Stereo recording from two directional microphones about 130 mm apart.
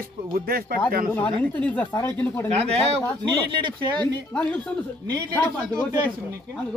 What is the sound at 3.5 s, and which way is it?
Speech, 40° right (ahead or behind).